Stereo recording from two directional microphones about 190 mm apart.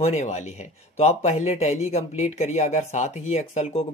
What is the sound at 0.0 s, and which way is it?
Speech, 35° left (ahead or behind).